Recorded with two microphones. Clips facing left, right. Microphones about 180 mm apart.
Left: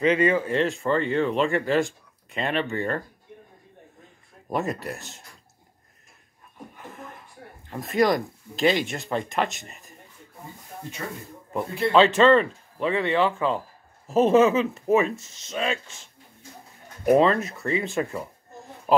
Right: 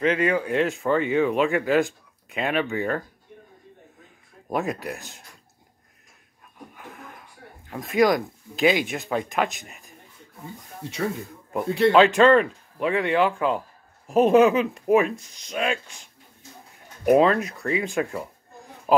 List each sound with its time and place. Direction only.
0.0 s speech: centre (ahead or behind)
4.5 s speech: centre (ahead or behind)
6.7 s speech: centre (ahead or behind)
10.8 s speech: 80° right
11.9 s speech: centre (ahead or behind)
17.0 s speech: 5° right (ahead or behind)